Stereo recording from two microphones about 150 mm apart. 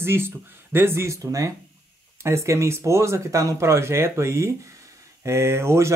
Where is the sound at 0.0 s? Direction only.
15° right (ahead or behind).